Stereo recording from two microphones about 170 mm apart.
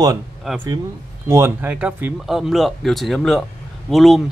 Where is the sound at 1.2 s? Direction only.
15° right (ahead or behind).